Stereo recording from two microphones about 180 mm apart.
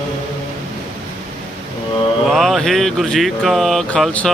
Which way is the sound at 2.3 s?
Centre (ahead or behind).